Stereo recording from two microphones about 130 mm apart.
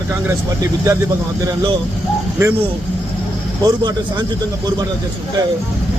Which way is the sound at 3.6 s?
35° right (ahead or behind).